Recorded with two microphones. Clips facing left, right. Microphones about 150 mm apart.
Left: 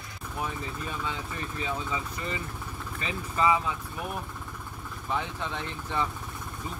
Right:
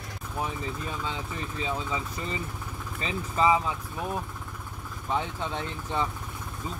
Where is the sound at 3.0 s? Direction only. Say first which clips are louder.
Right 2 dB; 25° right (ahead or behind).